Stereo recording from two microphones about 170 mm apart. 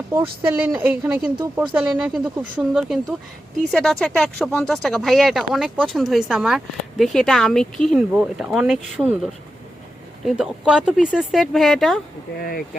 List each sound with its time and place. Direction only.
0.1 s speech: 10° right (ahead or behind)
12.4 s speech: 60° left (ahead or behind)